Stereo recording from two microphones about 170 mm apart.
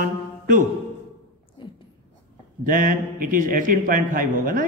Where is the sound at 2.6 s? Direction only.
55° right (ahead or behind).